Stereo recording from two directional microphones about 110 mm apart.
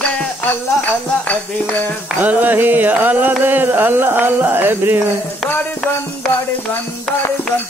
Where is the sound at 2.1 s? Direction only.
15° right (ahead or behind).